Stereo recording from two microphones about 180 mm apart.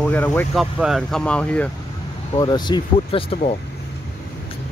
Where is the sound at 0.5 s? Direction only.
Centre (ahead or behind).